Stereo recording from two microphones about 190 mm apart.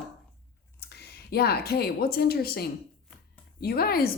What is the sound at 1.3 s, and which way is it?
A woman's voice, 55° left (ahead or behind).